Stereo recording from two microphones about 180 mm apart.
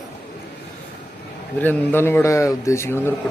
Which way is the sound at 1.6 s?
10° left (ahead or behind).